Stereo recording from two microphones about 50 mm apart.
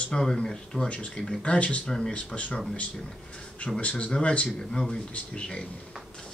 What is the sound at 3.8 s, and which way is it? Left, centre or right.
A man's voice, left.